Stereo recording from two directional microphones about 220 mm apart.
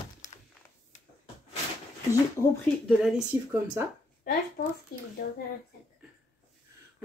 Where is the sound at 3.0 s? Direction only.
Centre (ahead or behind).